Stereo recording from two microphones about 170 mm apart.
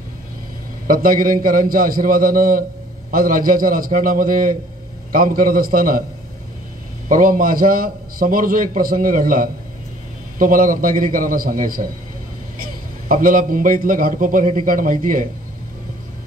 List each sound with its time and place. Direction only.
0.8 s a man's voice: 55° right (ahead or behind)
7.1 s a man's voice: 55° right (ahead or behind)
13.1 s a man's voice: 55° right (ahead or behind)